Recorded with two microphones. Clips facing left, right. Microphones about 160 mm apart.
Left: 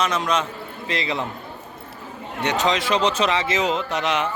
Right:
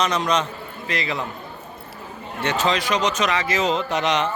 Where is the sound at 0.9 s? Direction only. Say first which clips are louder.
Left 1 dB; 25° left (ahead or behind).